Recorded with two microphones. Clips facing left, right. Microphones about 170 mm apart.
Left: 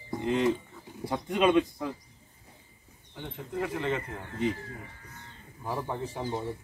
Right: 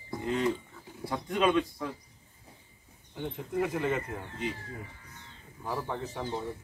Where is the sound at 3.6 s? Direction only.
10° right (ahead or behind).